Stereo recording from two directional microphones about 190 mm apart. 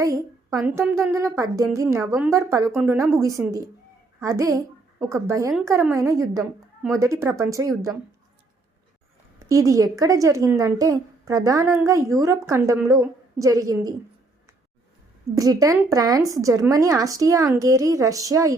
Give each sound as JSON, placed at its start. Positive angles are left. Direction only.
{"t": 0.0, "sound": "a woman's voice", "side_deg": -15}
{"t": 9.4, "sound": "speech", "side_deg": -15}
{"t": 15.4, "sound": "speech", "side_deg": -20}